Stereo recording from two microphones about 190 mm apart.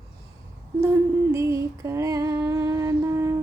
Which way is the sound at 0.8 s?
15° right (ahead or behind).